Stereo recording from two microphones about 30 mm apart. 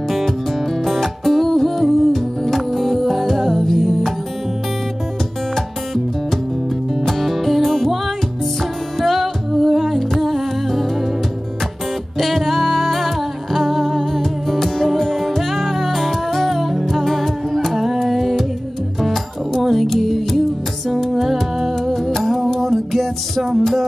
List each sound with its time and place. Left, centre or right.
0.8 s music: centre
1.9 s music: centre
7.1 s music: centre
9.0 s music: centre
12.2 s humming: centre
17.7 s music: centre
19.6 s music: centre